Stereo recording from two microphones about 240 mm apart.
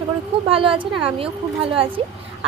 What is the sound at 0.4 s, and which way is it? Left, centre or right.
A woman's voice, right.